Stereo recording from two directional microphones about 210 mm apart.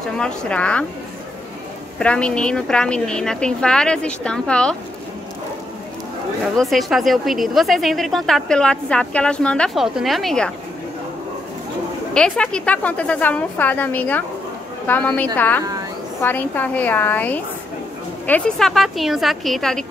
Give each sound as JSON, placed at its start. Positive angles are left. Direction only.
{"t": 0.2, "sound": "a woman's voice", "side_deg": 5}
{"t": 2.0, "sound": "a woman's voice", "side_deg": 5}
{"t": 6.5, "sound": "a woman's voice", "side_deg": 0}
{"t": 12.1, "sound": "a woman's voice", "side_deg": 5}